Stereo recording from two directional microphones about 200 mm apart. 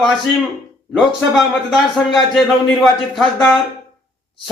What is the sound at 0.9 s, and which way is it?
Speech, centre (ahead or behind).